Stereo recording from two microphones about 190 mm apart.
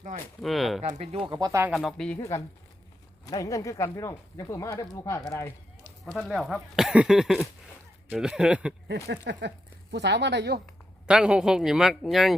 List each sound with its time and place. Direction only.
0.4 s speech: centre (ahead or behind)
0.8 s speech: 35° right (ahead or behind); by 1.6 s 20° right (ahead or behind)
1.6 s speech: centre (ahead or behind)
2.1 s speech: 15° left (ahead or behind); by 8.7 s 5° right (ahead or behind)
8.9 s speech: 65° right (ahead or behind)
11.0 s speech: 5° right (ahead or behind)